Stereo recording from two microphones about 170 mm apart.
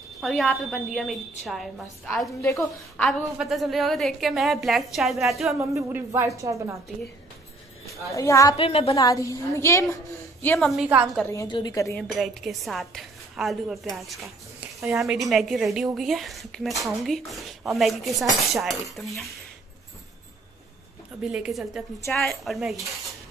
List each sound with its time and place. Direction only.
0.2 s a woman's voice: 5° left (ahead or behind)
2.4 s a woman's voice: 15° left (ahead or behind)
3.1 s a woman's voice: centre (ahead or behind)
5.6 s speech: 15° right (ahead or behind)
7.8 s a woman's voice: 20° left (ahead or behind)
8.5 s a woman's voice: 35° left (ahead or behind)
8.9 s a woman's voice: 20° left (ahead or behind)
10.7 s a woman's voice: 5° right (ahead or behind)
11.2 s a woman's voice: 20° left (ahead or behind)
12.0 s a woman's voice: centre (ahead or behind)
21.2 s a woman's voice: 5° right (ahead or behind)